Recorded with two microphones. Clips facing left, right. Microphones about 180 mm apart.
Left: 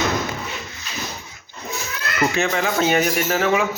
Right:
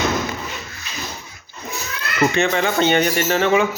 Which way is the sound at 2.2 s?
Centre (ahead or behind).